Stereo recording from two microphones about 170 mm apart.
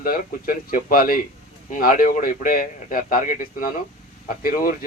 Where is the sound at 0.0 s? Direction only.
55° left (ahead or behind).